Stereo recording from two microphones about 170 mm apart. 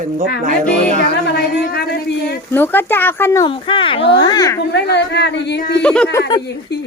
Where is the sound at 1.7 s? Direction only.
75° left (ahead or behind).